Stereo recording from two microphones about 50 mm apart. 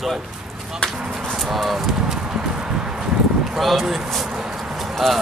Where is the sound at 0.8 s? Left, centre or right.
Centre.